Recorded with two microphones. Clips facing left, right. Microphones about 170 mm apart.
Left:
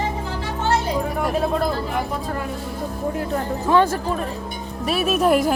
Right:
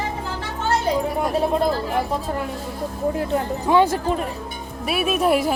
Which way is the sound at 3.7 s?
15° right (ahead or behind).